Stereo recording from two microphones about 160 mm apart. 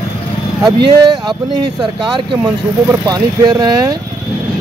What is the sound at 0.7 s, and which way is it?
Speech, 30° right (ahead or behind).